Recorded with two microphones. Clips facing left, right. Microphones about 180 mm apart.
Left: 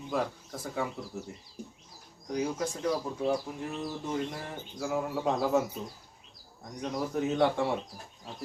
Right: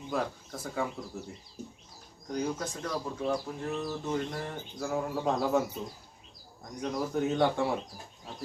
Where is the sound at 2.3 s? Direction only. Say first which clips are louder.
Left 1 dB; 5° left (ahead or behind).